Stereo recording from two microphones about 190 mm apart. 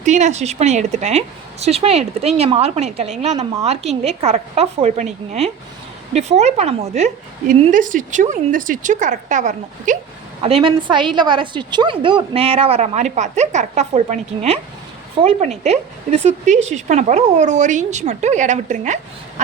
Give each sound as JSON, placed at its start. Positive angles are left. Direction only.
{"t": 0.0, "sound": "a woman's voice", "side_deg": -40}
{"t": 10.4, "sound": "a woman's voice", "side_deg": -30}